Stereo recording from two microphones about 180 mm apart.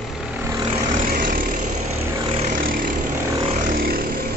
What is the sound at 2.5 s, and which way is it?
Vehicle, 50° right (ahead or behind).